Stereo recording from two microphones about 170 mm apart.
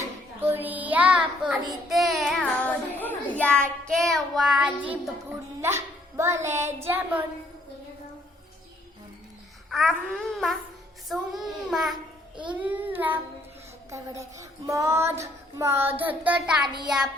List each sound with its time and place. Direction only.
0.3 s child singing: 10° right (ahead or behind)
5.5 s speech: 15° right (ahead or behind)
9.6 s babbling: centre (ahead or behind)
12.5 s child singing: 10° right (ahead or behind)